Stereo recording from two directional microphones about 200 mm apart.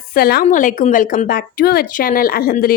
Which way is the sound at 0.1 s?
50° left (ahead or behind).